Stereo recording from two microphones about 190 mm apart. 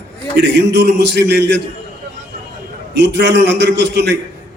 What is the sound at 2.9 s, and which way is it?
A man's voice, 65° right (ahead or behind).